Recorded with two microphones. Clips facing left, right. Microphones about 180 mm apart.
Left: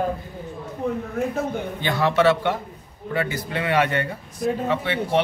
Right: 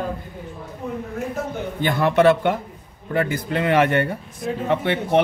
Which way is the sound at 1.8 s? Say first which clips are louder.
Right 3 dB; 50° right (ahead or behind).